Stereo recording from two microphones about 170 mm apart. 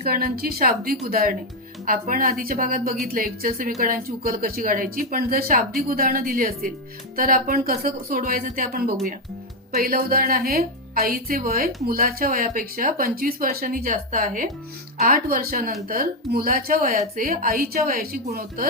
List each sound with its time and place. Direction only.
0.0 s a woman's voice: 60° right (ahead or behind)